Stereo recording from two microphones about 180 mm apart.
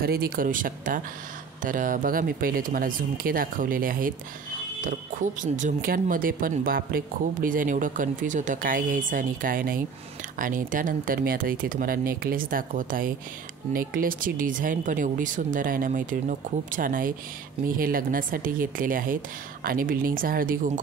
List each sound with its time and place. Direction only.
0.0 s speech: 55° right (ahead or behind)